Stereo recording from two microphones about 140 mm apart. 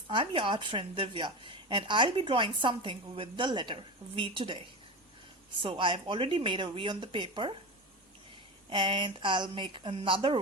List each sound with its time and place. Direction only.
0.1 s a woman's voice: 35° right (ahead or behind)
8.7 s a woman's voice: 35° right (ahead or behind)